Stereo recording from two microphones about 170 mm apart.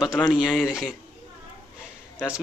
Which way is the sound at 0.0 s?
Centre (ahead or behind).